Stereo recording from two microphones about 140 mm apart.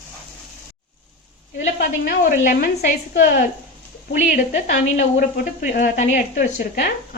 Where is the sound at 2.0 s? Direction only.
80° left.